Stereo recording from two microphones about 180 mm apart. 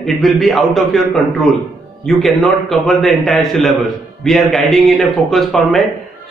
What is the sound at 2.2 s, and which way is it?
A man's voice, centre (ahead or behind).